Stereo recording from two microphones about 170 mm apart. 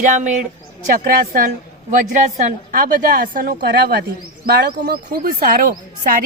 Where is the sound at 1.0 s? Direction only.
55° right (ahead or behind).